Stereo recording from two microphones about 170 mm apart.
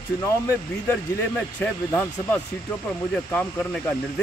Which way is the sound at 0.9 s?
10° left (ahead or behind).